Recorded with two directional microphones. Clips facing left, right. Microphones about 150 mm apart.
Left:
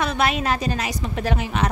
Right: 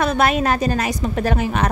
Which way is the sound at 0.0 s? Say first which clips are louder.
Right 4 dB; 45° right (ahead or behind).